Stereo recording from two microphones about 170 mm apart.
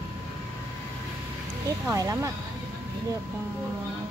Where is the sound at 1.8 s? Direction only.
20° right (ahead or behind).